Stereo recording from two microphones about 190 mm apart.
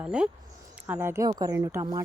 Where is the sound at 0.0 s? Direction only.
5° right (ahead or behind).